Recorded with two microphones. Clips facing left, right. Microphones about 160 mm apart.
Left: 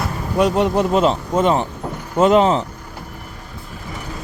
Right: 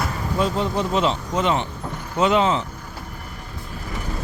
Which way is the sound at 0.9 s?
45° left (ahead or behind).